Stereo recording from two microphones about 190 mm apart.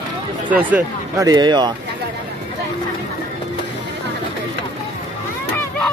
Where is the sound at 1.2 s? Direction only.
20° right (ahead or behind).